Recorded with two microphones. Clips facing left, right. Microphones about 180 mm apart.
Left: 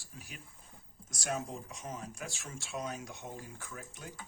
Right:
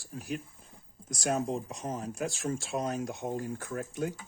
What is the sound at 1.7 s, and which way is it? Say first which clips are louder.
Speech: right 7 dB; 35° right (ahead or behind).